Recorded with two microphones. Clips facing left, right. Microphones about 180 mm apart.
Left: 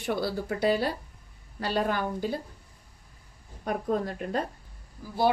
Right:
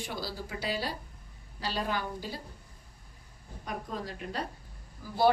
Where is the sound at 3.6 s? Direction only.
50° left (ahead or behind).